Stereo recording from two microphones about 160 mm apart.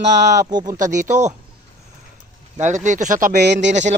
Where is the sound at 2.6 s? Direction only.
50° right (ahead or behind); by 3.7 s 75° right (ahead or behind).